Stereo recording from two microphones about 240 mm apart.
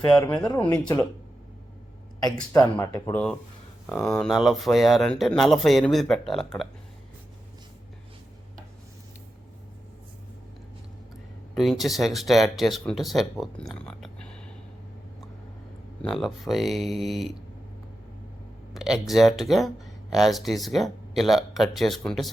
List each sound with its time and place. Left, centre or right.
0.1 s speech: centre
2.2 s speech: centre
4.3 s speech: centre
11.5 s speech: centre
16.0 s speech: centre
18.7 s a sound: centre
19.0 s speech: centre